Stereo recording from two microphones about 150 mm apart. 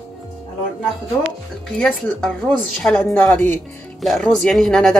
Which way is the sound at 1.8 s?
5° left (ahead or behind).